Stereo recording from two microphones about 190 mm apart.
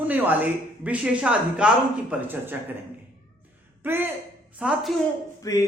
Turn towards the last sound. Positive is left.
turn(degrees=20)  # may be behind; listen again after turning